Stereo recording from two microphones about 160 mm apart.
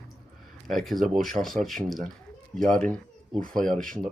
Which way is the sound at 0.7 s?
Centre (ahead or behind).